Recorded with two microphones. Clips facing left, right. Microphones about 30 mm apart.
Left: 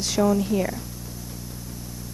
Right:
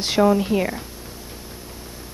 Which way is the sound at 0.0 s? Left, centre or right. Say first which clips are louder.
Right 4 dB; right.